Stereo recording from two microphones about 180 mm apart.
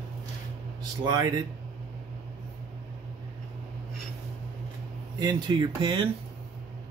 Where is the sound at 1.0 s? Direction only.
20° right (ahead or behind).